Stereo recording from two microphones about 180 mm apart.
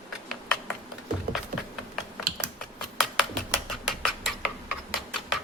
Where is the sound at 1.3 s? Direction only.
60° right (ahead or behind).